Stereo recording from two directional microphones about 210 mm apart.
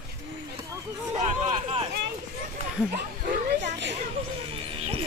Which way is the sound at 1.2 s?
35° right (ahead or behind).